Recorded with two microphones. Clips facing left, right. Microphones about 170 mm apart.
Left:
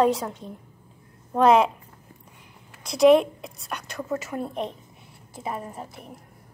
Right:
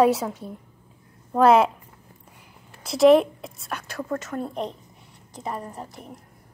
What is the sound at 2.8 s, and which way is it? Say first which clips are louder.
A woman's voice: right 1 dB; centre (ahead or behind).